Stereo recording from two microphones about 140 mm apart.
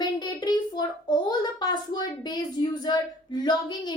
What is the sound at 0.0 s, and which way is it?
A child's voice, 30° left (ahead or behind).